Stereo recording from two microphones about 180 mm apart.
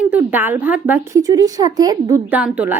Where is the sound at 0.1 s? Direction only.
10° right (ahead or behind).